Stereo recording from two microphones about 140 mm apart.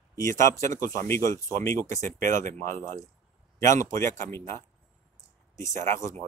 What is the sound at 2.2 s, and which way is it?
Speech, 70° right (ahead or behind).